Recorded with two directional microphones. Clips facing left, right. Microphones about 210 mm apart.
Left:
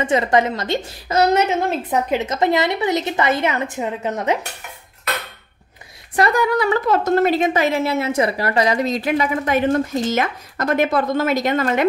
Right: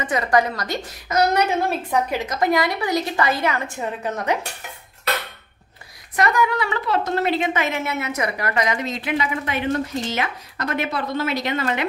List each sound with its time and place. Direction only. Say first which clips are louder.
0.0 s a woman's voice: left 3 dB; 25° left (ahead or behind)
6.1 s a woman's voice: left 3 dB; 35° left (ahead or behind)